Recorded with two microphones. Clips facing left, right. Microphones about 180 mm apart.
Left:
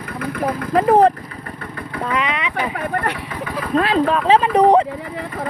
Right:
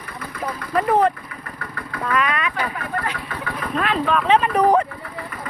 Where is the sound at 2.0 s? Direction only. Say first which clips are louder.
Right 1 dB; 20° left (ahead or behind).